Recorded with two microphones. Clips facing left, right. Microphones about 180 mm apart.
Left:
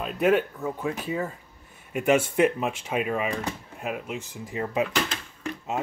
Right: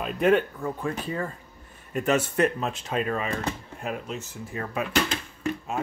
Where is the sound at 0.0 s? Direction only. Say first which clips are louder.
Right 1 dB; 5° left (ahead or behind).